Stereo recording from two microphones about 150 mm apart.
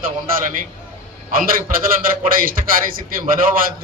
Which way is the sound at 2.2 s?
65° right (ahead or behind).